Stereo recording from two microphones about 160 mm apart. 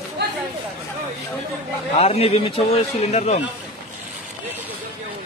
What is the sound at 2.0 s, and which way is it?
A man's voice, 40° left (ahead or behind).